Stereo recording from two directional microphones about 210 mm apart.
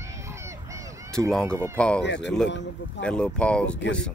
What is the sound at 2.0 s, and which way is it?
Speech, 55° left (ahead or behind).